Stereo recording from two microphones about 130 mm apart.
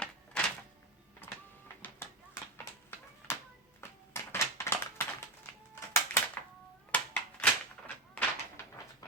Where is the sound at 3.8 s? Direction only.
20° left (ahead or behind).